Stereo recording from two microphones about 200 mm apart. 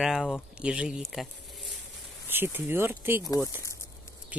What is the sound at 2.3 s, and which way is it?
Speech, 10° right (ahead or behind).